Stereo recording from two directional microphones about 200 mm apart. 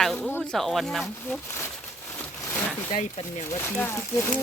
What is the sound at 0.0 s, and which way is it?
Speech, 5° left (ahead or behind).